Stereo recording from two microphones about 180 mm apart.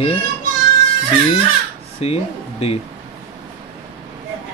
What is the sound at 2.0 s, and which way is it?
Speech, 35° left (ahead or behind).